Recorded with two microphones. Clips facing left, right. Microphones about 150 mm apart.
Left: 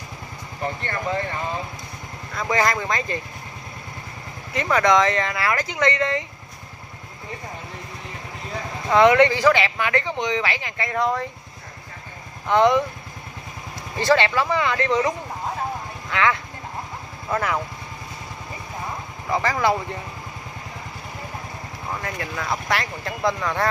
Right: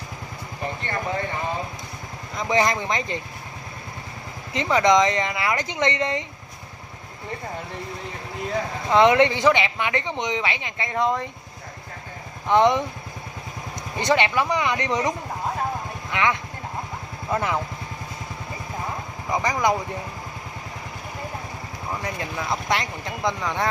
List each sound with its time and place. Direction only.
2.3 s speech: 20° right (ahead or behind)
4.6 s speech: 20° right (ahead or behind)
8.9 s speech: 20° right (ahead or behind)
12.4 s speech: 25° right (ahead or behind)
13.9 s speech: 20° right (ahead or behind)
19.3 s speech: 15° right (ahead or behind)
22.0 s speech: 20° right (ahead or behind)